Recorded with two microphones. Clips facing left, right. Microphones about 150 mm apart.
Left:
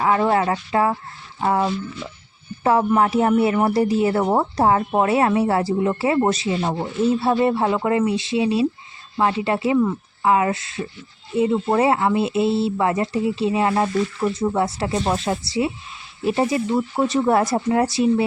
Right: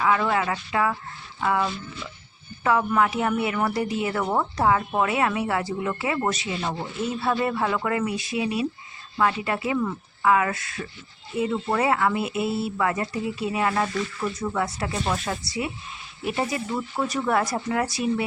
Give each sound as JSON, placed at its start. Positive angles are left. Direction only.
{"t": 0.0, "sound": "a woman's voice", "side_deg": 35}